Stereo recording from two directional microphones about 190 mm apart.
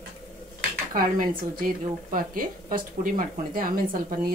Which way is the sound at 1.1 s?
45° right (ahead or behind).